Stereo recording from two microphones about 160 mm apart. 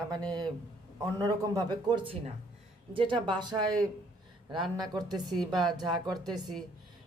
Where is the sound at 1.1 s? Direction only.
25° right (ahead or behind).